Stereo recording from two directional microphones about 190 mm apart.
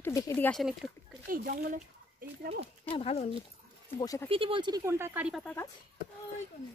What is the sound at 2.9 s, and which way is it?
Speech, 30° left (ahead or behind).